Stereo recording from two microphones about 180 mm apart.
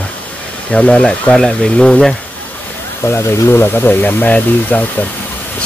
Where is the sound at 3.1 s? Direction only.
15° left (ahead or behind).